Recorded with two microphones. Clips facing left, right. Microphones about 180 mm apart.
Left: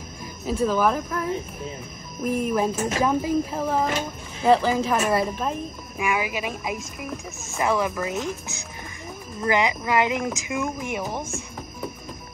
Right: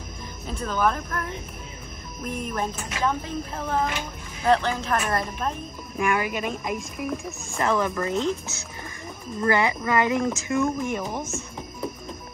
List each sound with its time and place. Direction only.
0.5 s speech: 5° left (ahead or behind)
2.2 s speech: 5° left (ahead or behind)